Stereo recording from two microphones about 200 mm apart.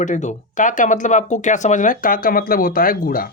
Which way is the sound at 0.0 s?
35° left (ahead or behind).